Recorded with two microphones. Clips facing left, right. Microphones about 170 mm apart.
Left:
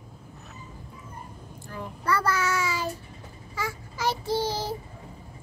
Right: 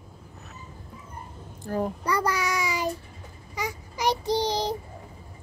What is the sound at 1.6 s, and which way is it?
Speech, 45° right (ahead or behind).